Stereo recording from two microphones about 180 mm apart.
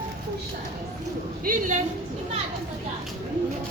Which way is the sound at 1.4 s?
45° right (ahead or behind).